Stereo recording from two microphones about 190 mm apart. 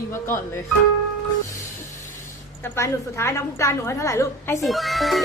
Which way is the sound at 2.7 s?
15° left (ahead or behind).